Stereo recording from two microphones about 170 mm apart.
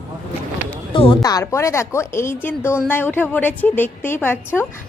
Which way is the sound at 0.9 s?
25° left (ahead or behind).